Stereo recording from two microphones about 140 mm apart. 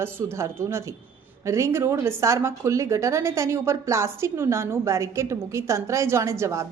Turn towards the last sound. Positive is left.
turn(degrees=-20)  # may be behind; listen again after turning